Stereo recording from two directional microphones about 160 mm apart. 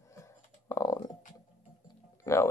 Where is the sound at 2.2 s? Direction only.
15° left (ahead or behind).